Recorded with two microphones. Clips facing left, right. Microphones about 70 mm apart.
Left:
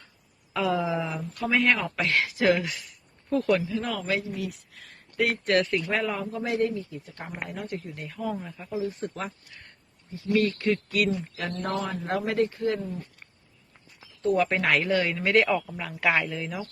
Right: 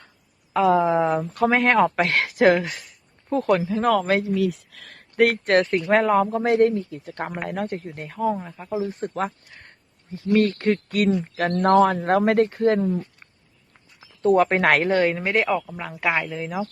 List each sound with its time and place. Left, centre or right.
0.5 s speech: right
3.7 s a man's voice: right
4.7 s speech: right
5.1 s a man's voice: right
7.7 s speech: right
8.9 s a man's voice: right
11.5 s speech: right
12.1 s speech: right
14.2 s a man's voice: right
14.8 s speech: right
15.2 s speech: centre
15.7 s speech: right